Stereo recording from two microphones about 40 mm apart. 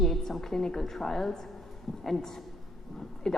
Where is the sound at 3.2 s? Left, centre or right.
Centre.